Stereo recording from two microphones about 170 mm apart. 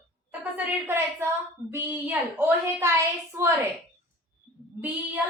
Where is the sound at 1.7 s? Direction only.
10° right (ahead or behind).